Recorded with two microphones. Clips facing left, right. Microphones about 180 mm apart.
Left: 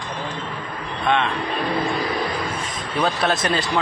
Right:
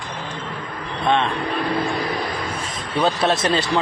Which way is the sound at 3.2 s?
30° right (ahead or behind).